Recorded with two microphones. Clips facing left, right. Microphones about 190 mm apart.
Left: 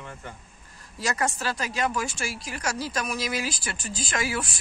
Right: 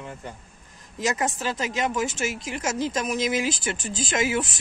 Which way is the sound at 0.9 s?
20° right (ahead or behind).